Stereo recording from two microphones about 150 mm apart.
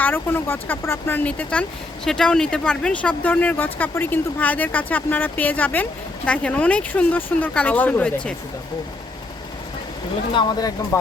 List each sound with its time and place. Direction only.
0.0 s speech: 15° left (ahead or behind)
10.3 s speech: 25° left (ahead or behind)